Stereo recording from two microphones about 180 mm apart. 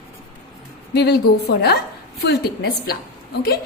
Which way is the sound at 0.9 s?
65° left (ahead or behind).